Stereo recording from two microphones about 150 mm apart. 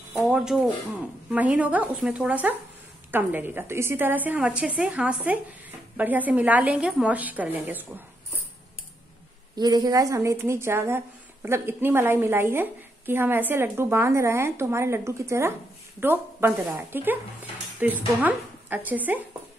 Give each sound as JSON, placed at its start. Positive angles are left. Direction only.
{"t": 0.3, "sound": "a sound", "side_deg": -5}
{"t": 1.3, "sound": "a woman's voice", "side_deg": -10}
{"t": 9.6, "sound": "a woman's voice", "side_deg": -25}